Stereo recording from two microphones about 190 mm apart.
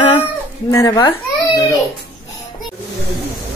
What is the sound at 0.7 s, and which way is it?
Speech, 20° left (ahead or behind).